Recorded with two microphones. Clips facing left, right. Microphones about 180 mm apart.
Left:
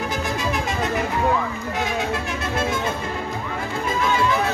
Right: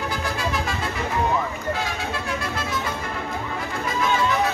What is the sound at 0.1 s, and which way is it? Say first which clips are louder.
Music: left 2 dB; 20° left (ahead or behind).